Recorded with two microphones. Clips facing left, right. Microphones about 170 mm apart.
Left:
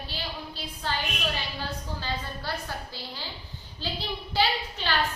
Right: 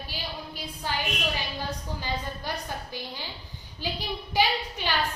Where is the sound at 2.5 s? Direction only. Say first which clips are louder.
Even; 15° right (ahead or behind).